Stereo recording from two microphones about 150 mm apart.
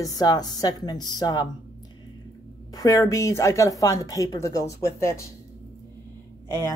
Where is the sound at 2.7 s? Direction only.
20° left (ahead or behind).